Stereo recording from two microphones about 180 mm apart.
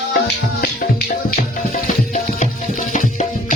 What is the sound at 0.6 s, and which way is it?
Music, 50° left (ahead or behind).